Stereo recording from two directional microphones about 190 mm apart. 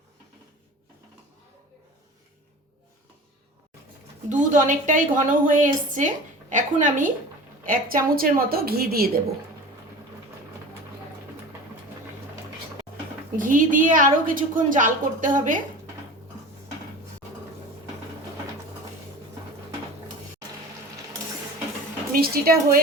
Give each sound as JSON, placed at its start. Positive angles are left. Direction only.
{"t": 4.3, "sound": "a woman's voice", "side_deg": -40}
{"t": 13.3, "sound": "a woman's voice", "side_deg": -45}
{"t": 22.1, "sound": "a woman's voice", "side_deg": -50}